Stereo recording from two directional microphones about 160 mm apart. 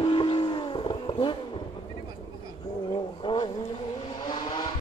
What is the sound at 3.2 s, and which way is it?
Vehicle, 30° left (ahead or behind).